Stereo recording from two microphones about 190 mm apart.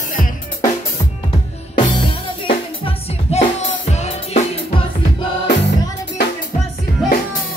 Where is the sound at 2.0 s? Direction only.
30° left (ahead or behind).